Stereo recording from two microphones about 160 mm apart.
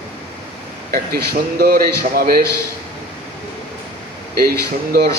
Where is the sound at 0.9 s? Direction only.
70° right (ahead or behind).